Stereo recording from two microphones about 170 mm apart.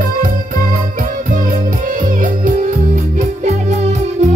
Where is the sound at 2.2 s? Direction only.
50° right (ahead or behind).